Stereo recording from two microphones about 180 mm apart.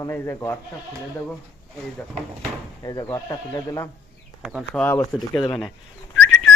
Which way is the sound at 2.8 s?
20° left (ahead or behind).